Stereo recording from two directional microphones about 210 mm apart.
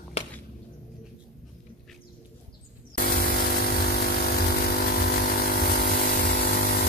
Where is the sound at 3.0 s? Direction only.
45° left (ahead or behind).